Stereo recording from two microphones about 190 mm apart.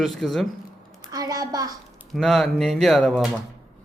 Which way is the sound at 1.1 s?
20° right (ahead or behind).